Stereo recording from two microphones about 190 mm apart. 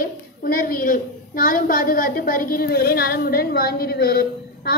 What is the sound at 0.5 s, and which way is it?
A woman's voice, 45° left (ahead or behind).